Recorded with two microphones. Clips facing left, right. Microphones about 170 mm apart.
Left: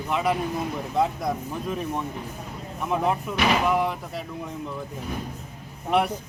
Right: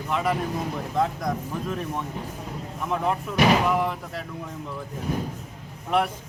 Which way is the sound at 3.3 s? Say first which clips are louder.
Right 4 dB; 5° left (ahead or behind).